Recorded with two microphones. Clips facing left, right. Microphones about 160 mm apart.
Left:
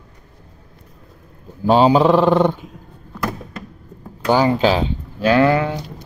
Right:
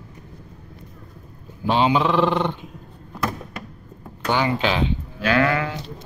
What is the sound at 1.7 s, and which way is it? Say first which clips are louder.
Speech: left 7 dB; 40° left (ahead or behind).